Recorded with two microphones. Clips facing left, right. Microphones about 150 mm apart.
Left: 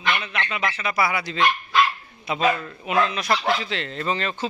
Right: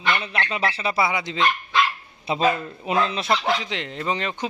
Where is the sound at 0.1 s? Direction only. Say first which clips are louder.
Right 2 dB; 30° right (ahead or behind).